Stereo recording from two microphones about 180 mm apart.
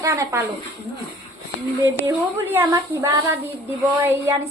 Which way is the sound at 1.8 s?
15° right (ahead or behind).